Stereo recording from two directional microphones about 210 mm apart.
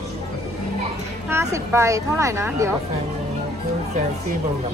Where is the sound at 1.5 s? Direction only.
15° right (ahead or behind).